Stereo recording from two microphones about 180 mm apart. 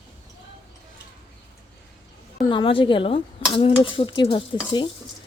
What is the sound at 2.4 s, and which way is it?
Speech, 30° left (ahead or behind).